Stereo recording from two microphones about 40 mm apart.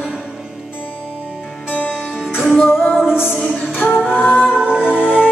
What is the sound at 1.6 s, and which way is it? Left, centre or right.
Music, left.